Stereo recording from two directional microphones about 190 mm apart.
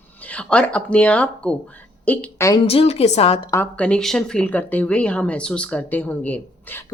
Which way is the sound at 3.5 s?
10° left (ahead or behind).